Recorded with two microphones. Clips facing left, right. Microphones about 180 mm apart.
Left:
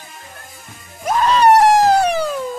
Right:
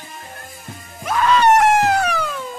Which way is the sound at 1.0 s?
35° left (ahead or behind).